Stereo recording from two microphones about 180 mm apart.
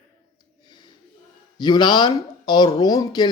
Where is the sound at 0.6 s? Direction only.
25° left (ahead or behind).